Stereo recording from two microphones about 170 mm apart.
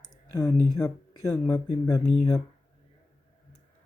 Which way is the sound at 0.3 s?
20° left (ahead or behind).